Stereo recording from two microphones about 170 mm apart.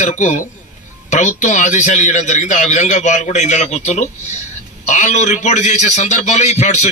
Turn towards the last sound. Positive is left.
turn(degrees=45)  # may be behind; listen again after turning